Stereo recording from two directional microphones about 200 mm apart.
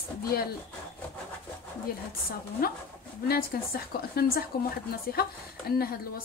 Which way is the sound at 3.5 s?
50° left (ahead or behind).